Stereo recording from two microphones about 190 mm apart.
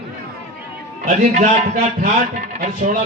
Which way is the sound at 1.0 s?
40° right (ahead or behind).